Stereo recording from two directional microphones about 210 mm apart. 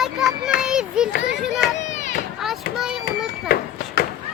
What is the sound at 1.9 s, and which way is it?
Children playing, 35° left (ahead or behind).